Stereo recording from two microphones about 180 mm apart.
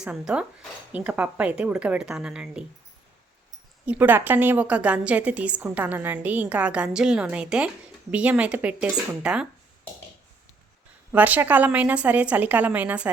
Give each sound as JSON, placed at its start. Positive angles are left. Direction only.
{"t": 0.0, "sound": "speech", "side_deg": -5}
{"t": 3.8, "sound": "a woman's voice", "side_deg": -10}
{"t": 11.1, "sound": "a woman's voice", "side_deg": -10}